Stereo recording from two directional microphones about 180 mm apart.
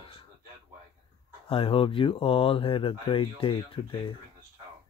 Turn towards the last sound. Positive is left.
turn(degrees=25)  # may be behind; listen again after turning